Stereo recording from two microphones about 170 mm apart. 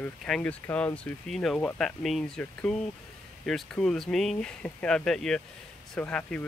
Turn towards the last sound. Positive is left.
turn(degrees=10)  # may be behind; listen again after turning